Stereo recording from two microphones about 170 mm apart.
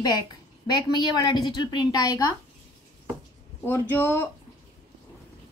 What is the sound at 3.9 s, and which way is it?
Speech, 15° left (ahead or behind).